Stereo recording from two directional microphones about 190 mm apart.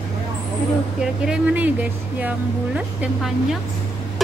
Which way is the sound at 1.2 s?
5° right (ahead or behind).